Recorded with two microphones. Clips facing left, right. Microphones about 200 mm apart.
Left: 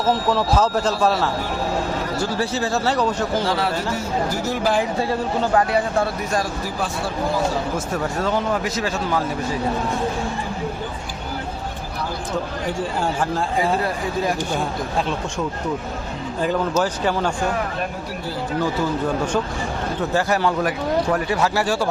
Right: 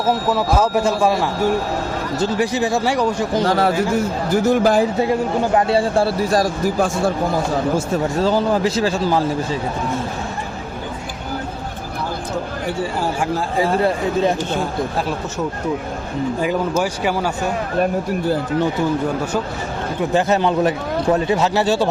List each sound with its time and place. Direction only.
0.1 s a man's voice: 5° right (ahead or behind)
3.4 s speech: 45° right (ahead or behind)
4.9 s speech: 20° right (ahead or behind); by 7.1 s 45° right (ahead or behind)
7.9 s speech: 30° right (ahead or behind)
13.8 s speech: 25° right (ahead or behind)
16.4 s a man's voice: 10° right (ahead or behind)
20.0 s speech: 20° right (ahead or behind)